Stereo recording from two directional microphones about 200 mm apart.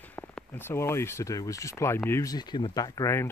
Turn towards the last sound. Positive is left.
turn(degrees=15)  # may be behind; listen again after turning